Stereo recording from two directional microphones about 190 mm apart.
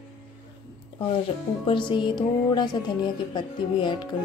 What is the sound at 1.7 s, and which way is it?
Speech, 25° left (ahead or behind).